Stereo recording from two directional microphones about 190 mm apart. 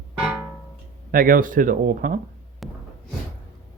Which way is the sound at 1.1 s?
50° right (ahead or behind).